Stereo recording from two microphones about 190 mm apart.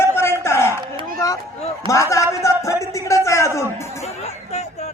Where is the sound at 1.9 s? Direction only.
15° left (ahead or behind).